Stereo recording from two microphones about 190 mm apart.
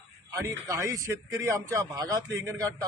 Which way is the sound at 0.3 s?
15° right (ahead or behind).